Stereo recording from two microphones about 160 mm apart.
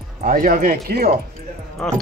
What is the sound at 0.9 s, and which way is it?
Speech, 75° right (ahead or behind).